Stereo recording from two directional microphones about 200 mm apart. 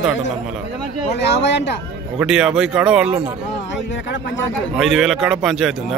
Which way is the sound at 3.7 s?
65° left (ahead or behind).